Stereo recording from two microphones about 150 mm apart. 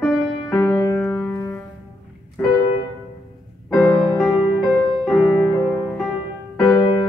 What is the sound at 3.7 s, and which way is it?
Music, centre (ahead or behind).